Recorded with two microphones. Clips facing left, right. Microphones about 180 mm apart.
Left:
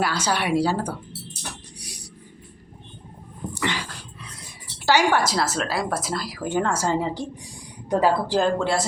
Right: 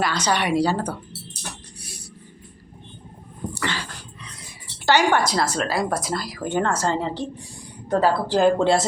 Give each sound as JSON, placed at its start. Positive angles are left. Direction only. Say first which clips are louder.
{"t": 0.0, "sound": "speech", "louder": "right 1 dB", "side_deg": 5}
{"t": 1.4, "sound": "dog", "louder": "even", "side_deg": 15}
{"t": 3.5, "sound": "a sound", "louder": "left 2 dB", "side_deg": 20}
{"t": 4.9, "sound": "speech", "louder": "right 1 dB", "side_deg": 5}
{"t": 8.5, "sound": "speech", "louder": "right 4 dB", "side_deg": -25}